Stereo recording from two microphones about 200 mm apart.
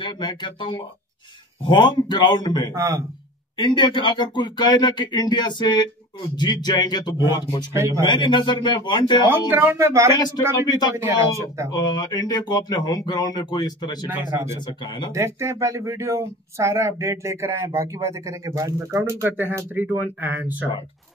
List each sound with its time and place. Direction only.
0.0 s speech: 25° left (ahead or behind)
2.7 s speech: 15° right (ahead or behind)
3.5 s speech: 25° left (ahead or behind)
7.7 s speech: 15° right (ahead or behind)
8.0 s speech: 20° left (ahead or behind)
9.5 s speech: 10° right (ahead or behind)
10.1 s speech: 20° left (ahead or behind)
11.0 s speech: 15° right (ahead or behind)
11.7 s speech: 20° left (ahead or behind)
15.1 s speech: 15° right (ahead or behind)